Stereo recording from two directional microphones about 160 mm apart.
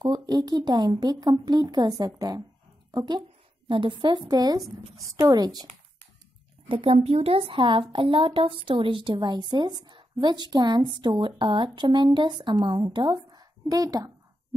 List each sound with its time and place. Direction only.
0.0 s a woman's voice: 25° right (ahead or behind)
6.7 s a woman's voice: 35° right (ahead or behind)